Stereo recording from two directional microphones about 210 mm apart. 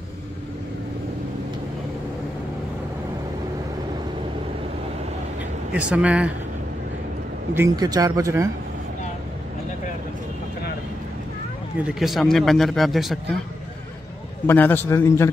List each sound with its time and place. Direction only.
5.7 s speech: 5° right (ahead or behind)
7.5 s speech: 15° right (ahead or behind)
11.9 s speech: centre (ahead or behind)
14.4 s a man's voice: 10° left (ahead or behind)